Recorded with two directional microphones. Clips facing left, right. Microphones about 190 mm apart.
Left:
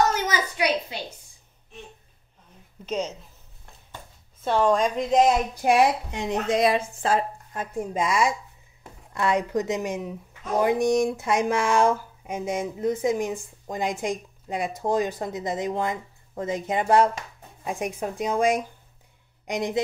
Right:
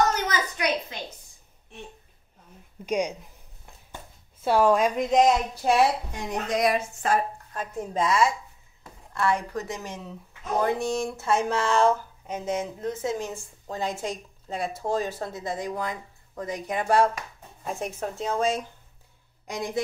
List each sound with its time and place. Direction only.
0.1 s a woman's voice: 10° left (ahead or behind)
2.8 s speech: 15° right (ahead or behind)
3.9 s a sound: 10° right (ahead or behind)
5.5 s a woman's voice: 15° left (ahead or behind)
7.5 s speech: 15° left (ahead or behind)